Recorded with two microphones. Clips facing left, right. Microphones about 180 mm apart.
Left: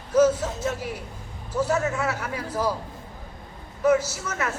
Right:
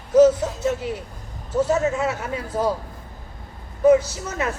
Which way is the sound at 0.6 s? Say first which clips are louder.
Right 5 dB; 20° right (ahead or behind).